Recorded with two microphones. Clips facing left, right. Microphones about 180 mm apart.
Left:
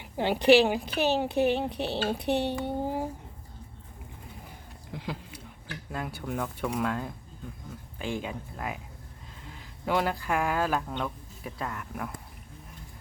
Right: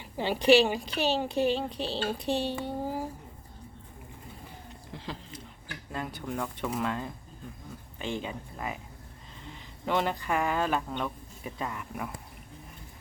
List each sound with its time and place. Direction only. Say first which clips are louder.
0.0 s a sound: left 3 dB; 15° left (ahead or behind)
0.4 s speech: left 1 dB; 15° left (ahead or behind)
1.3 s a woman's voice: left 2 dB; 60° left (ahead or behind)
2.5 s speech: left 2 dB; 20° left (ahead or behind)
4.9 s speech: left 3 dB; 10° left (ahead or behind)